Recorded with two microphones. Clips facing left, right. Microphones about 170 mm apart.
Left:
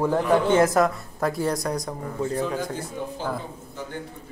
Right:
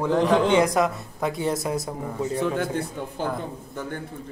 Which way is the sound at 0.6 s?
Centre (ahead or behind).